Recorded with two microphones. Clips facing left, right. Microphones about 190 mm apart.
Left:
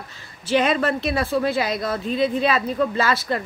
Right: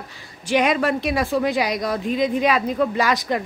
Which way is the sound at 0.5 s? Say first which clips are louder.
Right 1 dB; 15° right (ahead or behind).